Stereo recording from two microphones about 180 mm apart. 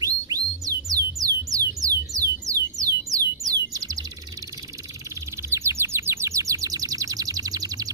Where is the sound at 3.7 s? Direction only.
20° right (ahead or behind).